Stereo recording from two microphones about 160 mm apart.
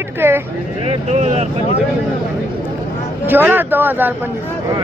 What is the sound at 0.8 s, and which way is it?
Speech, 45° right (ahead or behind).